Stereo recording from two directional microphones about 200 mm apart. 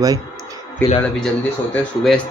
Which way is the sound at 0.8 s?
10° left (ahead or behind).